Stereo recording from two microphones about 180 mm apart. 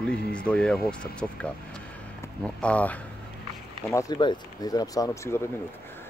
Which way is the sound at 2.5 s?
5° left (ahead or behind).